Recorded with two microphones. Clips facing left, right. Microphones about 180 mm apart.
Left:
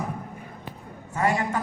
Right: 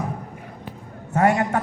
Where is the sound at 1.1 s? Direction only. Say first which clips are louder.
Right 6 dB; 65° right (ahead or behind).